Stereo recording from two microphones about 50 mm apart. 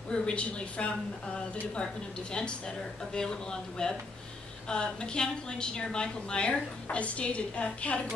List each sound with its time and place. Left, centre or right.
0.1 s a woman's voice: left